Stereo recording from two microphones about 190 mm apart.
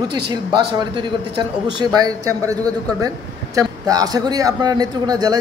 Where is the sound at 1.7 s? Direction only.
20° right (ahead or behind).